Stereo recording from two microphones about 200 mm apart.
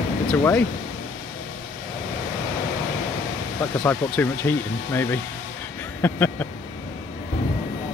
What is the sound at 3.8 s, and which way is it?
Speech, 10° left (ahead or behind).